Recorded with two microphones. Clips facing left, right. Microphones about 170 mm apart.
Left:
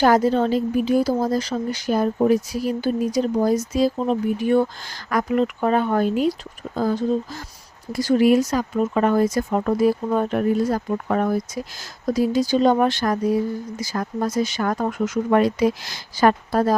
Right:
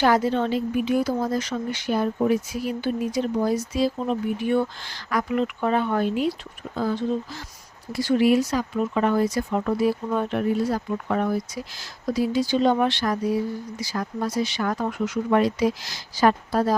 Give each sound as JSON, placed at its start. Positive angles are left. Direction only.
{"t": 0.0, "sound": "a woman's voice", "side_deg": 40}